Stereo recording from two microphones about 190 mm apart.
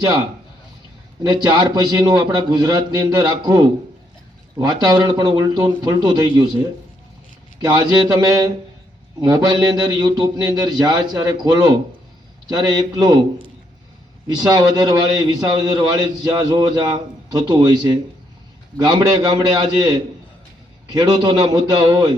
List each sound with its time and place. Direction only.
1.2 s a man's voice: 20° right (ahead or behind)
7.6 s a man's voice: 20° right (ahead or behind)
14.4 s a man's voice: 20° right (ahead or behind)